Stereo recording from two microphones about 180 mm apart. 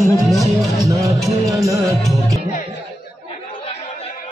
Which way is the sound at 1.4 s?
20° right (ahead or behind).